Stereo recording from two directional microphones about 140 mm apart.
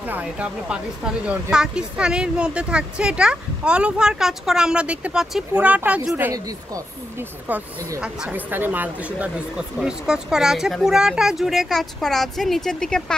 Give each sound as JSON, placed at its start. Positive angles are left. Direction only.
{"t": 0.0, "sound": "speech", "side_deg": -10}
{"t": 6.3, "sound": "speech", "side_deg": -25}
{"t": 8.0, "sound": "speech", "side_deg": -10}